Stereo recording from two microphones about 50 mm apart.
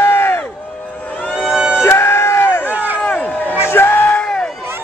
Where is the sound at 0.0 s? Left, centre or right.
Left.